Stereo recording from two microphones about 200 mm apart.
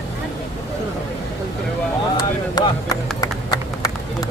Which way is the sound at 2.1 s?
20° left (ahead or behind).